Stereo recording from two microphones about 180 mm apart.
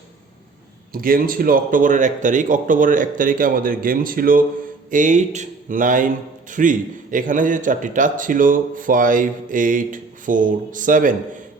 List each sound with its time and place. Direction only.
0.9 s a man's voice: 50° right (ahead or behind)